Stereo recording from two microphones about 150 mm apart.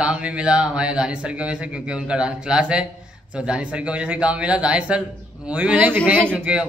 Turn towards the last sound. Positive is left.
turn(degrees=-5)  # may be behind; listen again after turning